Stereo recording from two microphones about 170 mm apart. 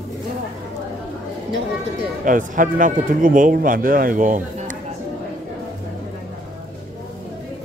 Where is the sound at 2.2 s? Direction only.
50° right (ahead or behind).